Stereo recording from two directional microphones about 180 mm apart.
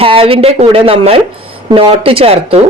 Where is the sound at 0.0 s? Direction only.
30° right (ahead or behind).